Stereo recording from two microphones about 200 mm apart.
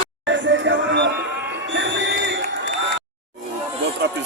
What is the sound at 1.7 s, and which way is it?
Crowd, 65° right (ahead or behind).